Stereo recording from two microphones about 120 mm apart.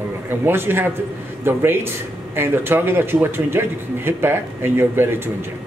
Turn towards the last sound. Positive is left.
turn(degrees=-20)  # may be behind; listen again after turning